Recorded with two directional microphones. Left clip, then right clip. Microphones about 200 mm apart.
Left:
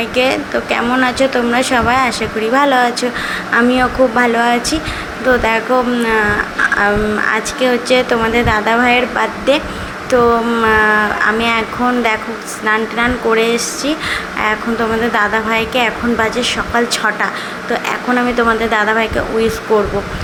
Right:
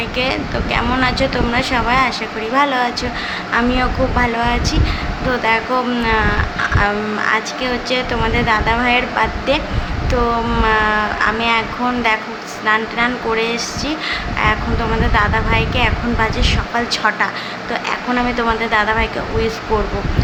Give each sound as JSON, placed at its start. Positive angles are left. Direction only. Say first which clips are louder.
{"t": 0.2, "sound": "speech", "louder": "left 6 dB", "side_deg": 20}
{"t": 12.6, "sound": "speech", "louder": "left 2 dB", "side_deg": 20}